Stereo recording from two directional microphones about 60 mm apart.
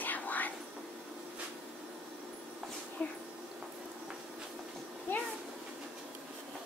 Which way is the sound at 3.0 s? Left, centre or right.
Centre.